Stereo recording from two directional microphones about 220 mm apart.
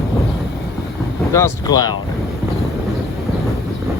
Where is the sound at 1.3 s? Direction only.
15° left (ahead or behind).